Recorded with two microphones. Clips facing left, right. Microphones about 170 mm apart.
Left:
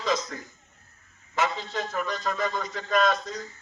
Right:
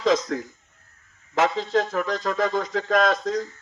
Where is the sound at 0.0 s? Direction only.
90° right.